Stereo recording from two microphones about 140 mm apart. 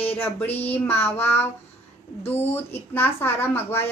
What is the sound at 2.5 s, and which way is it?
Speech, 15° left (ahead or behind).